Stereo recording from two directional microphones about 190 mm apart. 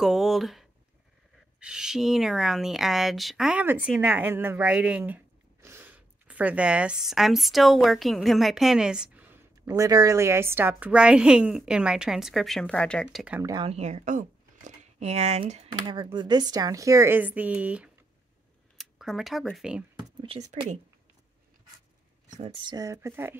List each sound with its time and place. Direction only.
0.0 s a woman's voice: centre (ahead or behind)
9.7 s a woman's voice: 20° right (ahead or behind); by 13.4 s centre (ahead or behind)
13.4 s speech: 20° right (ahead or behind)
13.7 s speech: 35° right (ahead or behind); by 19.8 s centre (ahead or behind)
20.2 s speech: 35° right (ahead or behind)
22.3 s speech: 30° right (ahead or behind); by 23.3 s 15° right (ahead or behind)